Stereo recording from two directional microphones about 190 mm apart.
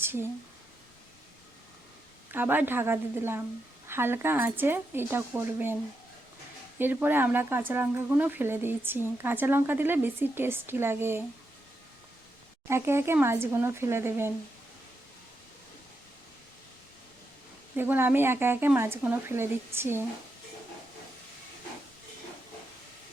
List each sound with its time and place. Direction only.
0.0 s speech: 10° right (ahead or behind)
2.3 s speech: 10° right (ahead or behind)
6.7 s speech: 10° right (ahead or behind)
12.6 s speech: 15° right (ahead or behind)
17.7 s speech: 10° right (ahead or behind)